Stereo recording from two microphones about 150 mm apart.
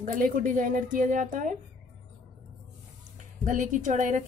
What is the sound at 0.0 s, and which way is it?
A woman's voice, 65° right (ahead or behind).